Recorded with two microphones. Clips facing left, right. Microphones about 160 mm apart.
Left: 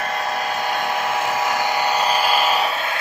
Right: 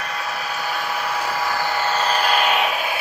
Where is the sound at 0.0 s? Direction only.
45° left (ahead or behind).